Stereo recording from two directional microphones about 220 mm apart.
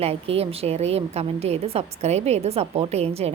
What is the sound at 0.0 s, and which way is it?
A woman's voice, 25° right (ahead or behind).